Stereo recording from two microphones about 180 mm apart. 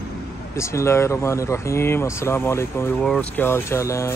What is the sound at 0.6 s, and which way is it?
Speech, 15° left (ahead or behind).